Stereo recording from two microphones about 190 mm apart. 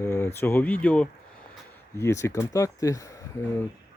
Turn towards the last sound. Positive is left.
turn(degrees=15)  # may be behind; listen again after turning